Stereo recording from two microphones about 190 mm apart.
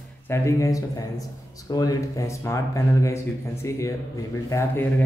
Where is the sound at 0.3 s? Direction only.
15° left (ahead or behind).